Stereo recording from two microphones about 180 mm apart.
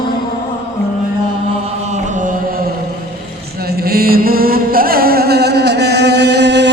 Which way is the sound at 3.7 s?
60° right (ahead or behind).